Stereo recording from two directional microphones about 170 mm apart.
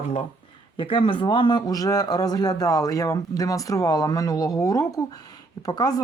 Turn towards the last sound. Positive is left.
turn(degrees=20)  # may be behind; listen again after turning